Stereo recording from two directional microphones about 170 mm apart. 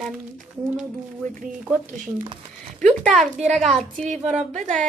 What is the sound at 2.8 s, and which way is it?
A woman's voice, 5° left (ahead or behind).